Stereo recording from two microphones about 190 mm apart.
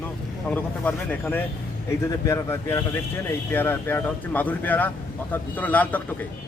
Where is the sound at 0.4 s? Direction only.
10° left (ahead or behind).